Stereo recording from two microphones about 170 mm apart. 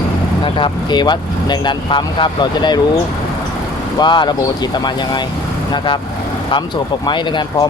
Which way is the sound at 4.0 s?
25° left (ahead or behind).